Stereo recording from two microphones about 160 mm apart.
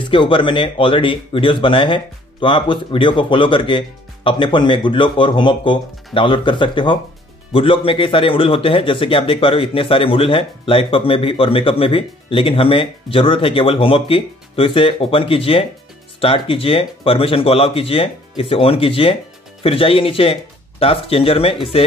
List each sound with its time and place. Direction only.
0.1 s a man's voice: 30° left (ahead or behind)